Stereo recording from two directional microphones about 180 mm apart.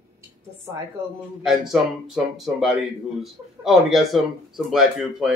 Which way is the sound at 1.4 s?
Centre (ahead or behind).